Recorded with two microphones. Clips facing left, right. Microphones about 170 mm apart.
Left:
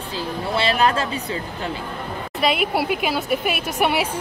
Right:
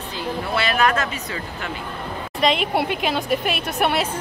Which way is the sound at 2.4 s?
5° left (ahead or behind).